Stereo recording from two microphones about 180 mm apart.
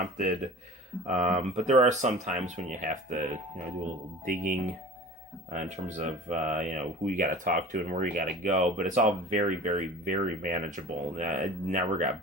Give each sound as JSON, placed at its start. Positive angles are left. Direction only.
{"t": 1.0, "sound": "speech", "side_deg": -45}